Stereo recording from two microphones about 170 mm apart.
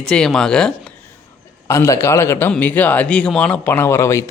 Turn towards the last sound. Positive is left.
turn(degrees=15)  # may be behind; listen again after turning